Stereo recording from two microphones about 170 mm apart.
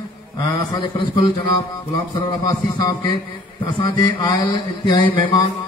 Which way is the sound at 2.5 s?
25° left (ahead or behind).